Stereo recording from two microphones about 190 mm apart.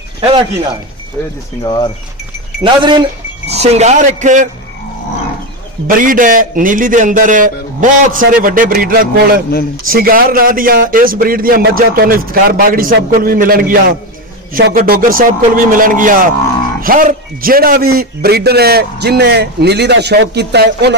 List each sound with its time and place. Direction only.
0.2 s speech: 25° right (ahead or behind)
1.6 s speech: 20° left (ahead or behind)
2.6 s speech: 25° right (ahead or behind)
5.9 s a man's voice: 45° right (ahead or behind)